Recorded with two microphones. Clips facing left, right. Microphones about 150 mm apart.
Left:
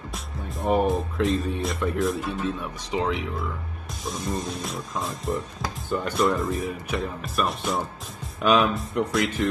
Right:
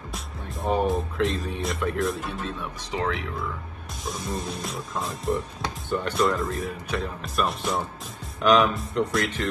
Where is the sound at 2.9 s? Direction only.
20° left (ahead or behind).